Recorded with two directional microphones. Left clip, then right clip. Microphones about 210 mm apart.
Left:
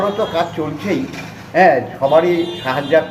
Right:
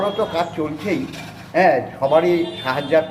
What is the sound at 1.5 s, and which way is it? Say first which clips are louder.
A man's voice: left 4 dB; 15° right (ahead or behind).